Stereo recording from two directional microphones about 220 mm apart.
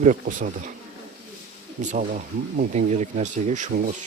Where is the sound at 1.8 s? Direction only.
35° right (ahead or behind).